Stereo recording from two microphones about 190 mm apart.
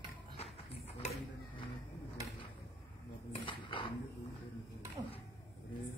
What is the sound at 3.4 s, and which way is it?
Roaring cats, 25° left (ahead or behind).